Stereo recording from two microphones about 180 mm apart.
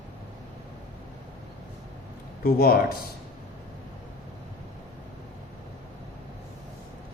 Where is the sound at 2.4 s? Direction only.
55° left (ahead or behind).